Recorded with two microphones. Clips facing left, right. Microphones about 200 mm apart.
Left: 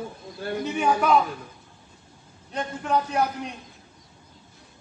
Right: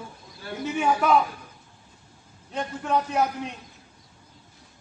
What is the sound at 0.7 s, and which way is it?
Speech, centre (ahead or behind).